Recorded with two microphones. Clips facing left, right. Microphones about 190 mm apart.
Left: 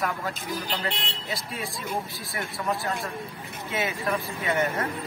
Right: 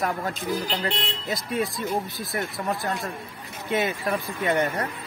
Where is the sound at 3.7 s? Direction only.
40° right (ahead or behind).